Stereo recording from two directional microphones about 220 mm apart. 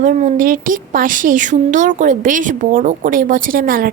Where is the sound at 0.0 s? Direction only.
35° right (ahead or behind).